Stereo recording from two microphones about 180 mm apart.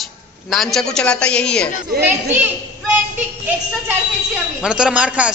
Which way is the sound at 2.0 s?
10° right (ahead or behind).